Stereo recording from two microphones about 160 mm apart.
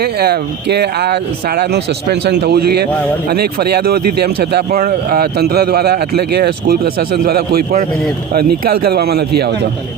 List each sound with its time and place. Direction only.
0.0 s speech: 80° right
4.8 s speech: 65° right (ahead or behind); by 9.6 s 85° right